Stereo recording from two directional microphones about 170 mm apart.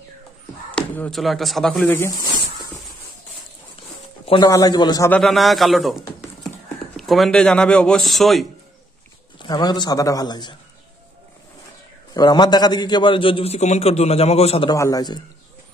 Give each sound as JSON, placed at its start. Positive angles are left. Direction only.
{"t": 0.9, "sound": "speech", "side_deg": 5}
{"t": 2.0, "sound": "snake", "side_deg": 20}
{"t": 4.3, "sound": "a man's voice", "side_deg": 25}
{"t": 5.1, "sound": "speech", "side_deg": 0}
{"t": 9.4, "sound": "a man's voice", "side_deg": 25}
{"t": 12.1, "sound": "a man's voice", "side_deg": 25}
{"t": 14.7, "sound": "a man's voice", "side_deg": 20}